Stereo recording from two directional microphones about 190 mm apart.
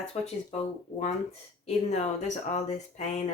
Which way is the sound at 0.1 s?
35° left (ahead or behind).